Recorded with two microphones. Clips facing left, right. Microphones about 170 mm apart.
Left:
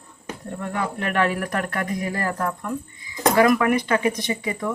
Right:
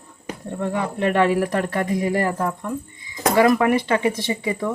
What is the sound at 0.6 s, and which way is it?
Speech, 25° right (ahead or behind).